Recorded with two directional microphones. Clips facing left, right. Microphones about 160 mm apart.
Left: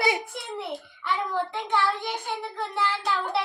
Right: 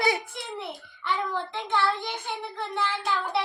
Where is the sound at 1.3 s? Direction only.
10° left (ahead or behind).